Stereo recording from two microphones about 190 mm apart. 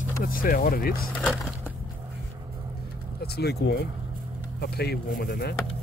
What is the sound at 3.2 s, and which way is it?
Speech, 60° left (ahead or behind).